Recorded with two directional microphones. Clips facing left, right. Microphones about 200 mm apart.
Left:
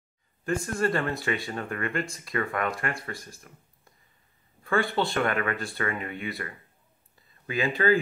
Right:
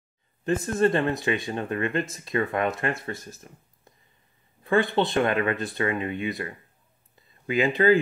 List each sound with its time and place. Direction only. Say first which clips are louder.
0.4 s speech: right 5 dB; 20° right (ahead or behind)